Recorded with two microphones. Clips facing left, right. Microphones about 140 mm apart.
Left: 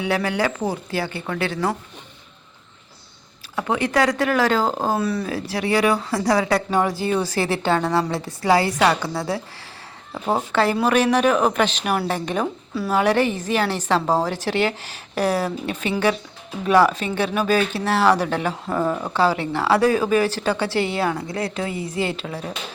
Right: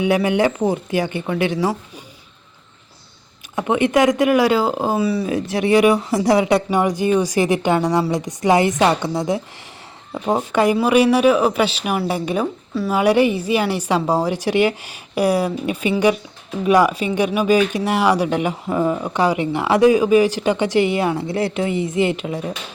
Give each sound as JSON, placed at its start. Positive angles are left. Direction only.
{"t": 0.0, "sound": "speech", "side_deg": -15}
{"t": 3.5, "sound": "speech", "side_deg": -20}
{"t": 5.2, "sound": "speech", "side_deg": -20}